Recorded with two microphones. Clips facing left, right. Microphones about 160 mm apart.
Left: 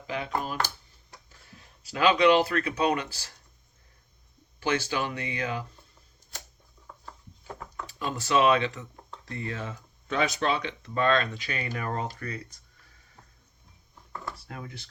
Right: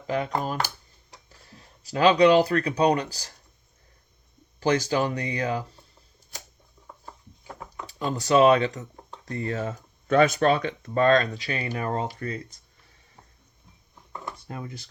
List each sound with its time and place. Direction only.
0.1 s speech: 45° right (ahead or behind)
4.6 s speech: 40° right (ahead or behind)
6.8 s a sound: 15° right (ahead or behind)
7.9 s speech: 35° right (ahead or behind)
14.4 s speech: 25° right (ahead or behind)